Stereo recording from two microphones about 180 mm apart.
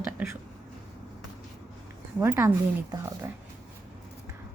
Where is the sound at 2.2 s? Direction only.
15° right (ahead or behind).